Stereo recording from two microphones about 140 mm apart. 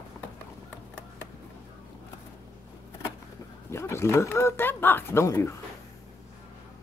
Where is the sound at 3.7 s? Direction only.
20° left (ahead or behind).